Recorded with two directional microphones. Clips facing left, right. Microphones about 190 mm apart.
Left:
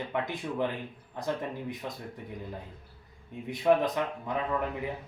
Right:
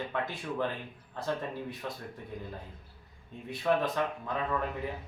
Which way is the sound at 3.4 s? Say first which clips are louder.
Left 4 dB; 15° left (ahead or behind).